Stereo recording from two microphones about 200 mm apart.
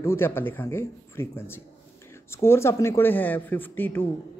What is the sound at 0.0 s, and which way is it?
A man's voice, 10° left (ahead or behind).